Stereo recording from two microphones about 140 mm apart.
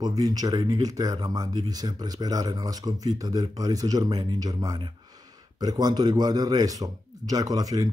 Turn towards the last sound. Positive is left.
turn(degrees=-25)  # may be behind; listen again after turning